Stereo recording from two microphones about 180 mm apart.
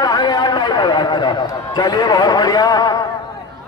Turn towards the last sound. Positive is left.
turn(degrees=20)  # may be behind; listen again after turning